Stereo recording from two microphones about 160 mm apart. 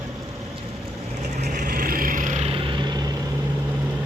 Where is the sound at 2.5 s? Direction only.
30° right (ahead or behind).